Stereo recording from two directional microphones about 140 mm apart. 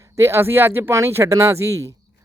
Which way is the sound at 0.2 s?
15° right (ahead or behind).